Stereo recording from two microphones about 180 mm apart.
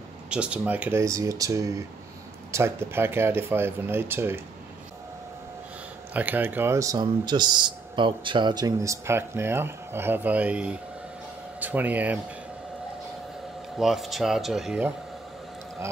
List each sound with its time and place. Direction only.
0.3 s speech: 5° right (ahead or behind)
6.1 s speech: 10° right (ahead or behind)
13.7 s speech: centre (ahead or behind)